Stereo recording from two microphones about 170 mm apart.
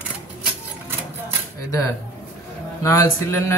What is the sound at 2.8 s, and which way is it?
Music, 20° left (ahead or behind).